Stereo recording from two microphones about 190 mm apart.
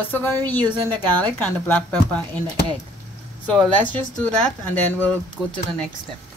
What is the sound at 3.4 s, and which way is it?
A woman's voice, 5° left (ahead or behind).